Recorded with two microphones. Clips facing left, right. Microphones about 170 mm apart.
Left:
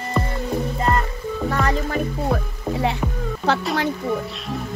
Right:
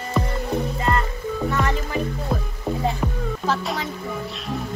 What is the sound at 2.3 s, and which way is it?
Music, 65° left (ahead or behind).